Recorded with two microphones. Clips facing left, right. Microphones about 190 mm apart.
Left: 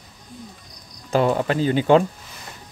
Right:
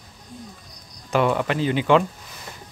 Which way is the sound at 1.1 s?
35° left (ahead or behind).